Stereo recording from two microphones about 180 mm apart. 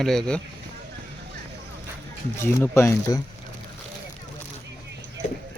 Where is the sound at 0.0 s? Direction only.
Centre (ahead or behind).